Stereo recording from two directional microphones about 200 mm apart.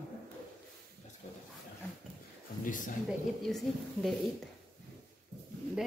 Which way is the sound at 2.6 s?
40° left (ahead or behind).